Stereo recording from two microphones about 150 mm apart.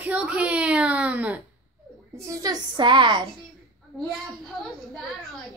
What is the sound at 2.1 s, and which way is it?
A child's voice, 20° right (ahead or behind).